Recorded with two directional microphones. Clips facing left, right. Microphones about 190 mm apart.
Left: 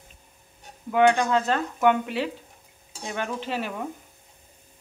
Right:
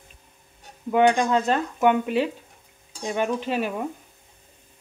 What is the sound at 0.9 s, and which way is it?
Speech, 20° right (ahead or behind).